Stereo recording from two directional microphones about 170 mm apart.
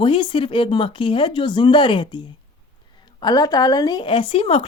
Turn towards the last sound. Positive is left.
turn(degrees=35)  # may be behind; listen again after turning